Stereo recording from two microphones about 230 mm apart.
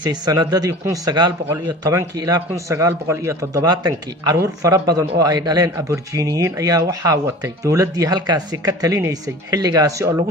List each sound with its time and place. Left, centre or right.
0.0 s a man's voice: centre